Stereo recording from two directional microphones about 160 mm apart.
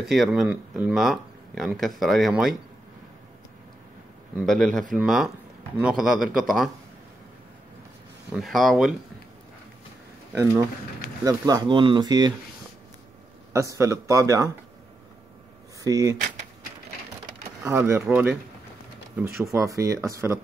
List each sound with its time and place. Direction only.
0.0 s speech: centre (ahead or behind)
4.4 s speech: centre (ahead or behind)
8.3 s speech: centre (ahead or behind)
10.3 s speech: 15° right (ahead or behind)
13.5 s speech: 20° right (ahead or behind)
15.8 s speech: 20° right (ahead or behind)
17.6 s speech: 15° right (ahead or behind)